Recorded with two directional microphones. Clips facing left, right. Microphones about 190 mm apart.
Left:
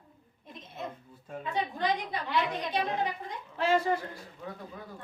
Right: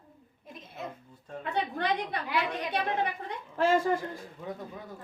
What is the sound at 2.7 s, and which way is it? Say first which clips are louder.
Speech: right 1 dB; 60° right (ahead or behind).